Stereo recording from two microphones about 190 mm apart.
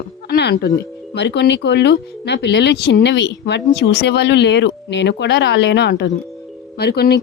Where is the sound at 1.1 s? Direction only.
65° left (ahead or behind).